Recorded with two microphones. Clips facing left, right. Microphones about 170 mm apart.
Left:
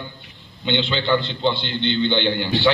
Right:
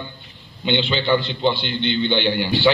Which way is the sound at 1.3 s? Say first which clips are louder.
Right 1 dB; 15° right (ahead or behind).